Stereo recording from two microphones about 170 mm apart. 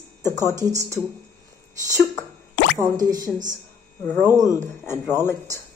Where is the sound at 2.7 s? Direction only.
20° right (ahead or behind).